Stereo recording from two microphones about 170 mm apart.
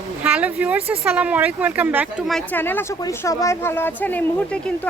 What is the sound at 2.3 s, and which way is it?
Speech, 5° left (ahead or behind).